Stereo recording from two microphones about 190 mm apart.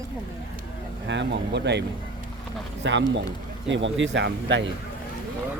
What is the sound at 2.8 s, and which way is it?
Speech, 70° right (ahead or behind).